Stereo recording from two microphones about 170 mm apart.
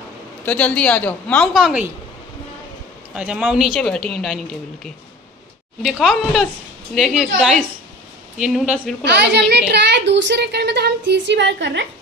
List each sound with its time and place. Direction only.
0.5 s speech: 10° left (ahead or behind)
1.5 s speech: 5° right (ahead or behind)
3.2 s speech: 5° right (ahead or behind)
5.8 s speech: centre (ahead or behind)
9.0 s a woman's voice: 85° right